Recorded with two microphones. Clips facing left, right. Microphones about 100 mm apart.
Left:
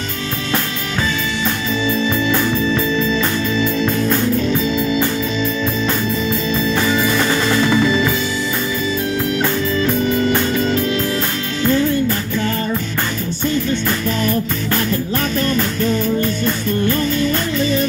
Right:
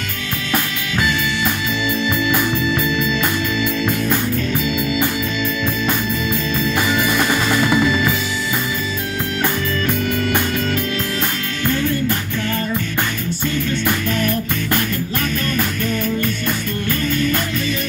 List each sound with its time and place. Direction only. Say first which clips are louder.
4.6 s organ: left 3 dB; 40° left (ahead or behind)
7.0 s music: left 1 dB; 15° right (ahead or behind)
10.0 s music: left 3 dB; 25° left (ahead or behind)
15.4 s music: left 4 dB; 25° left (ahead or behind)